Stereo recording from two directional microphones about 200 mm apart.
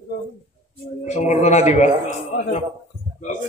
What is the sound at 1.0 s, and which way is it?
Speech, 35° left (ahead or behind).